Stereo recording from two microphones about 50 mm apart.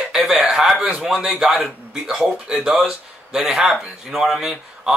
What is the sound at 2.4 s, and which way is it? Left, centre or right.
A man's voice, centre.